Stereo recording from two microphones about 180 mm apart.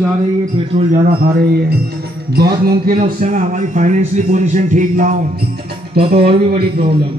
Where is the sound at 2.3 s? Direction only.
60° right (ahead or behind).